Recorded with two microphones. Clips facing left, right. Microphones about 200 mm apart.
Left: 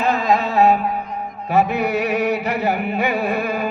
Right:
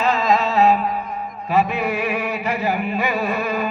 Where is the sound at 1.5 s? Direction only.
65° left (ahead or behind).